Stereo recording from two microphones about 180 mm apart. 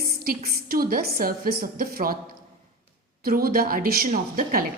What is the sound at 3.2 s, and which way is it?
A woman's voice, 55° right (ahead or behind).